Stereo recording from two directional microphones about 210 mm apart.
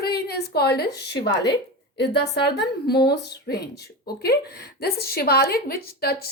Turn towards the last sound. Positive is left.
turn(degrees=45)  # may be behind; listen again after turning